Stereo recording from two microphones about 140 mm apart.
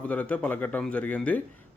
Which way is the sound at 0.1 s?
10° left (ahead or behind).